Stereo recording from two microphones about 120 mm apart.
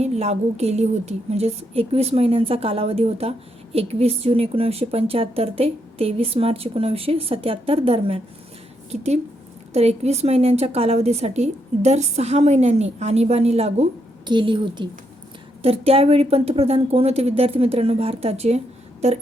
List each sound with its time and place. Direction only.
0.0 s speech: 65° right (ahead or behind)
8.9 s speech: 65° right (ahead or behind)
14.3 s a woman's voice: 40° right (ahead or behind)
15.6 s speech: 55° right (ahead or behind)